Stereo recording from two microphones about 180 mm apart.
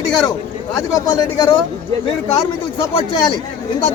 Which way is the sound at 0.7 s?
20° left (ahead or behind).